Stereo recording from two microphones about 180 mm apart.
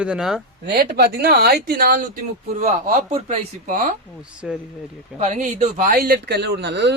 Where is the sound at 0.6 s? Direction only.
65° right (ahead or behind).